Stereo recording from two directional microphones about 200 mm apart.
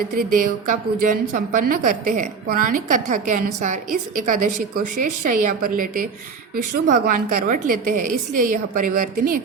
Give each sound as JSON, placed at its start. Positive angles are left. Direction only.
{"t": 0.2, "sound": "a woman's voice", "side_deg": -45}